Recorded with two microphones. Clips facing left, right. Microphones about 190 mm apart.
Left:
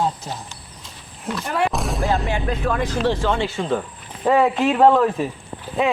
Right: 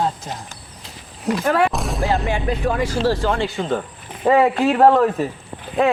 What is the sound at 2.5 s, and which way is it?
A man's voice, 10° right (ahead or behind).